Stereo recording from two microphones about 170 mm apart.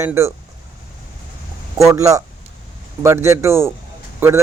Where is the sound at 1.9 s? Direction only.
20° right (ahead or behind).